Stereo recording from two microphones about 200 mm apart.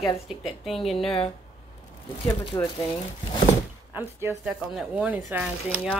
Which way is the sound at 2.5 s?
15° left (ahead or behind).